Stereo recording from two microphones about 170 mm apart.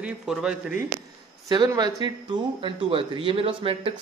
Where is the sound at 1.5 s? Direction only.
20° right (ahead or behind).